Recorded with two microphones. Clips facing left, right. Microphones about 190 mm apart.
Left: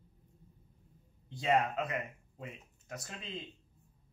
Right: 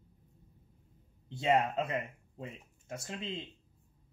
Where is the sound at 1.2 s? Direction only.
25° right (ahead or behind).